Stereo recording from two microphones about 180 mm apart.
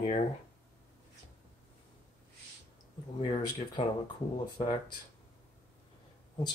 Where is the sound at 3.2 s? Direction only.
30° left (ahead or behind).